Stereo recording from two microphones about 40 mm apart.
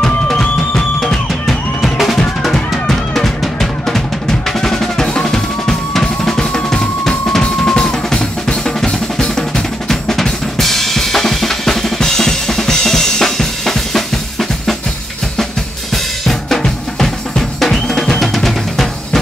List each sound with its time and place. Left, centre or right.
0.7 s music: centre
2.7 s drum: centre
12.0 s drum kit: centre
15.9 s drum kit: centre
18.2 s music: centre